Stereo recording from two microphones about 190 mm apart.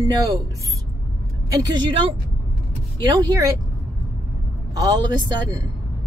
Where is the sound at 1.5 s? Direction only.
20° right (ahead or behind).